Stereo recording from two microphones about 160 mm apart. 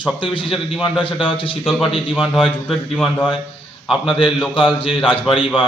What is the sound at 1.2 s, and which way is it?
Speech, 35° left (ahead or behind).